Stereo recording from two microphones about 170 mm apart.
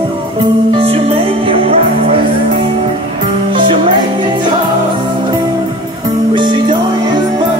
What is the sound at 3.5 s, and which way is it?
Music, 30° right (ahead or behind).